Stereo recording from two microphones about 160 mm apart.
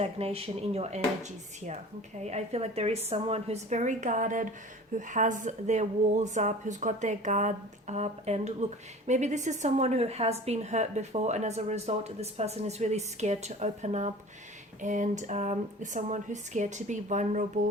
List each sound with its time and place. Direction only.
0.0 s a woman's voice: 40° right (ahead or behind)